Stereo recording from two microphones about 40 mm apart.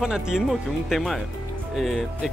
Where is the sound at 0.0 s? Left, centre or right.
Centre.